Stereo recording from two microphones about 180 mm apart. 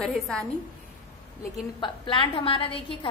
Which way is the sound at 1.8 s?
25° left (ahead or behind).